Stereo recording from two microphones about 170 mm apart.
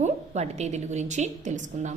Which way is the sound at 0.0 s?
40° right (ahead or behind).